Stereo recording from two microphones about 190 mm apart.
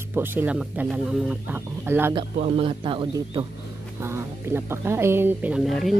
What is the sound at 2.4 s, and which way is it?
A man's voice, 30° right (ahead or behind).